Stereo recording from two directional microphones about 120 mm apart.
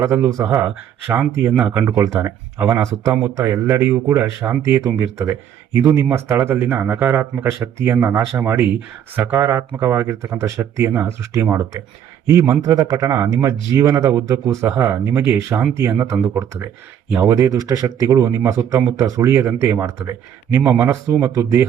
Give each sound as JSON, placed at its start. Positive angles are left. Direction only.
{"t": 0.0, "sound": "speech", "side_deg": -25}